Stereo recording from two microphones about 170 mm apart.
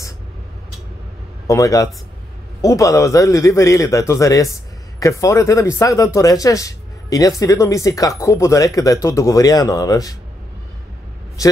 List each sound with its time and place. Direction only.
1.5 s a man's voice: 20° left (ahead or behind)